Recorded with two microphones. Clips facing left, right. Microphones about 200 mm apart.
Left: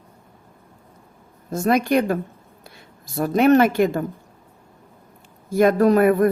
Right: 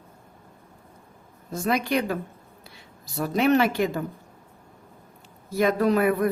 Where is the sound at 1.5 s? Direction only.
50° left (ahead or behind).